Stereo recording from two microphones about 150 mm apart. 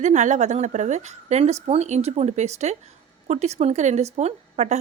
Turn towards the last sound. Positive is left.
turn(degrees=-50)  # may be behind; listen again after turning